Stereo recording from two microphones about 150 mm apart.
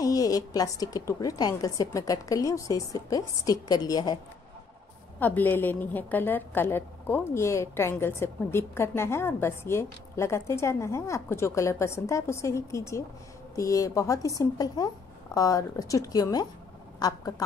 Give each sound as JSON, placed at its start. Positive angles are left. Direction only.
{"t": 0.0, "sound": "a woman's voice", "side_deg": 25}
{"t": 5.2, "sound": "a woman's voice", "side_deg": 10}